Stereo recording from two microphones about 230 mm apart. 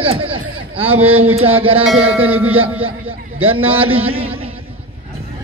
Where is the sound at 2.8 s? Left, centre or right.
Right.